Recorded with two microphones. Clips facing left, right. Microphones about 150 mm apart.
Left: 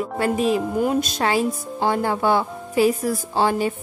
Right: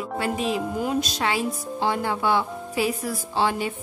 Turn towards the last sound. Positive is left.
turn(degrees=45)  # may be behind; listen again after turning